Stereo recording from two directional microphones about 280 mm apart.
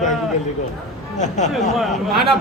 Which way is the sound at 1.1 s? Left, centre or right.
Left.